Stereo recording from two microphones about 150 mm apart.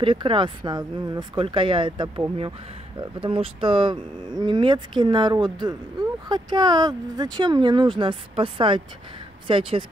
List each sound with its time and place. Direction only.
0.0 s speech: 35° right (ahead or behind)